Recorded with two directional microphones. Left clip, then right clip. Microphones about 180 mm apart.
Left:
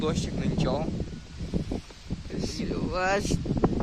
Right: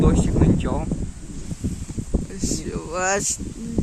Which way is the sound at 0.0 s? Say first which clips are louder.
Right 9 dB; 65° left (ahead or behind).